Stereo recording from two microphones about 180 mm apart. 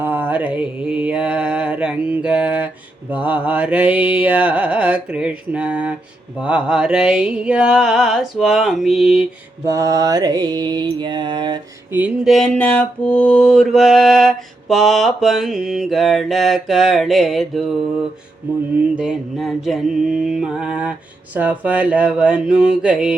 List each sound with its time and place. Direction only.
0.0 s mantra: 10° right (ahead or behind)
9.6 s mantra: 15° right (ahead or behind)
11.9 s mantra: 10° right (ahead or behind)
18.9 s mantra: 5° right (ahead or behind)